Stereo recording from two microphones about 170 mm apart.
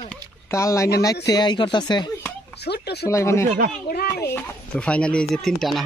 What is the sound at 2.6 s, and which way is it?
Speech, 75° left (ahead or behind).